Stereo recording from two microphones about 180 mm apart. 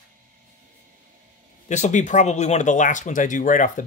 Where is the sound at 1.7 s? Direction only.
40° left (ahead or behind).